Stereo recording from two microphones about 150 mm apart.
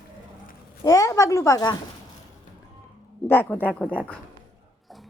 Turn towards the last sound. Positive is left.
turn(degrees=5)  # may be behind; listen again after turning